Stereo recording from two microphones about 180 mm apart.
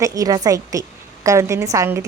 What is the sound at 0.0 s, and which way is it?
A woman's voice, 20° right (ahead or behind).